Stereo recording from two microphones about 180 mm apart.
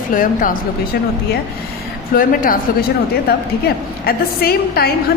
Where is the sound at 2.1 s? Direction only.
50° left (ahead or behind).